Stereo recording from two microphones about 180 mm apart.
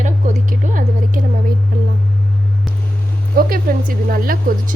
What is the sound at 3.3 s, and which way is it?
Speech, 55° right (ahead or behind).